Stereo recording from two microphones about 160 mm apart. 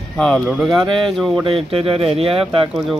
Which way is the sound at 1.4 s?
35° right (ahead or behind).